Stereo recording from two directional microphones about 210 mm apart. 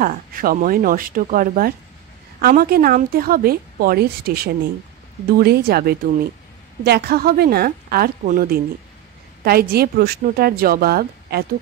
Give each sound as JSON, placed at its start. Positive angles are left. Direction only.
{"t": 0.0, "sound": "a woman's voice", "side_deg": -40}